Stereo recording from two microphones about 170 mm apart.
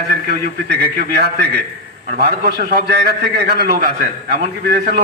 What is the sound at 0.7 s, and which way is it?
A man's voice, 65° right (ahead or behind).